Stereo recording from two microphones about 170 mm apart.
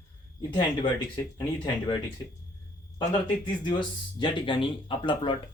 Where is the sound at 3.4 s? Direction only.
25° left (ahead or behind).